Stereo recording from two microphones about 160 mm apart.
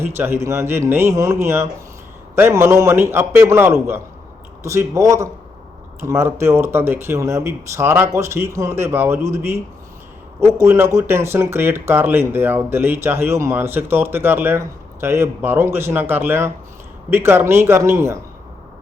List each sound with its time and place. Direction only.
0.0 s speech: 15° right (ahead or behind)